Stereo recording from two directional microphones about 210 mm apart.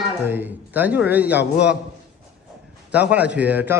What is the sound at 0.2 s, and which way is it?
A man's voice, 10° right (ahead or behind).